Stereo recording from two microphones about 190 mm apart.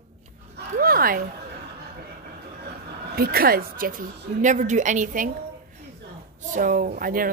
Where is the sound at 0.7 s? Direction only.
50° right (ahead or behind).